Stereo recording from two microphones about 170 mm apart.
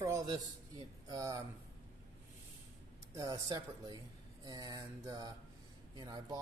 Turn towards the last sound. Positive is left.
turn(degrees=-25)  # may be behind; listen again after turning